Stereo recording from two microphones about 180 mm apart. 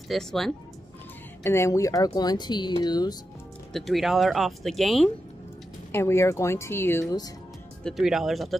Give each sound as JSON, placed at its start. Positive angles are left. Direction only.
{"t": 0.1, "sound": "speech", "side_deg": 0}
{"t": 1.4, "sound": "speech", "side_deg": 15}
{"t": 3.7, "sound": "speech", "side_deg": 0}
{"t": 5.9, "sound": "speech", "side_deg": 15}
{"t": 7.8, "sound": "speech", "side_deg": 0}